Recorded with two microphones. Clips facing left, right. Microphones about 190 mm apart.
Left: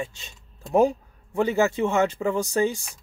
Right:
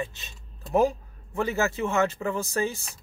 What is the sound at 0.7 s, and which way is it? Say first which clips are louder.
Speech: left 3 dB; 15° left (ahead or behind).